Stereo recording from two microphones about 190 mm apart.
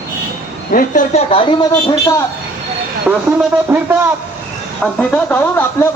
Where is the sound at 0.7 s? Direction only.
45° left (ahead or behind).